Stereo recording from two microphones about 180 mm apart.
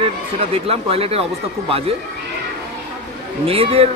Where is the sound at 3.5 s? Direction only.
30° right (ahead or behind).